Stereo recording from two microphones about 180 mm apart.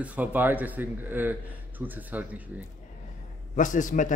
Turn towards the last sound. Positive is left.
turn(degrees=45)  # may be behind; listen again after turning